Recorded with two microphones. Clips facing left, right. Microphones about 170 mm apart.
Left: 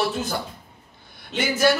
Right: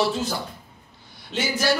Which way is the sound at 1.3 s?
55° left (ahead or behind).